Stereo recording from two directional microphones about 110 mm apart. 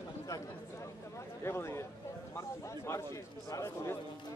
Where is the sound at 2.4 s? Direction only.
25° left (ahead or behind).